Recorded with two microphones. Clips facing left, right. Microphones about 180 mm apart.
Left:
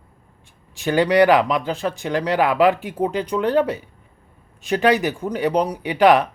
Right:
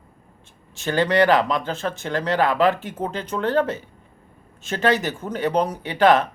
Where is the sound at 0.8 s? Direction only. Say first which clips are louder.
Left 3 dB; 15° left (ahead or behind).